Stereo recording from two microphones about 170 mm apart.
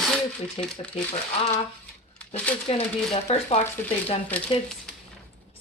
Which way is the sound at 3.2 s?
40° left (ahead or behind).